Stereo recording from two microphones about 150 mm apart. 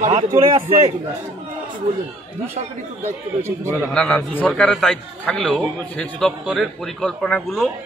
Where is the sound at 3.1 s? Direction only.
15° right (ahead or behind).